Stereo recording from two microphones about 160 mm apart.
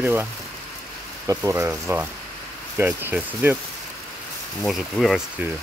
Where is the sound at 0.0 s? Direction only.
10° right (ahead or behind).